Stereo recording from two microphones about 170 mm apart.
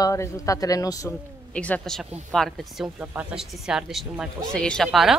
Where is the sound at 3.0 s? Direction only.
10° right (ahead or behind).